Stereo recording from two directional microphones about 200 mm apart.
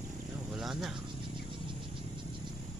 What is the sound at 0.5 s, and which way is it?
Cricket, centre (ahead or behind).